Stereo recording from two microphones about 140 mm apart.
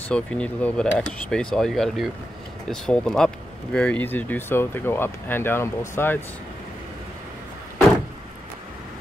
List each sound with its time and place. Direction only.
0.1 s speech: 10° left (ahead or behind)